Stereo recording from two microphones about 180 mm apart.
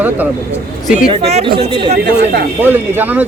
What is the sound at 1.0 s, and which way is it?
Speech, 35° right (ahead or behind).